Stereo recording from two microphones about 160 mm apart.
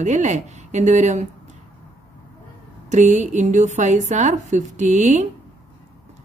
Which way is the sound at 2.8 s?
45° right (ahead or behind).